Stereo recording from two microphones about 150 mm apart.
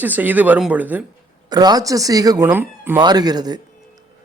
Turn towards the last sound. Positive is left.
turn(degrees=-25)  # may be behind; listen again after turning